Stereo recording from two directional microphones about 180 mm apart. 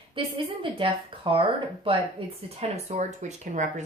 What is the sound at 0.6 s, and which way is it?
Speech, 30° right (ahead or behind).